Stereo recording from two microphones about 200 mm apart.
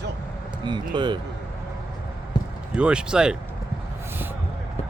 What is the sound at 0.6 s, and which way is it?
Speech, 20° right (ahead or behind).